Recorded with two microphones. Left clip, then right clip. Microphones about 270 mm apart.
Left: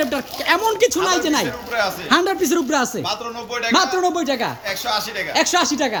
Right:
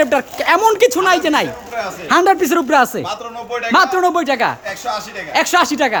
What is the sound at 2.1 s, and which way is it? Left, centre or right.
Speech, centre.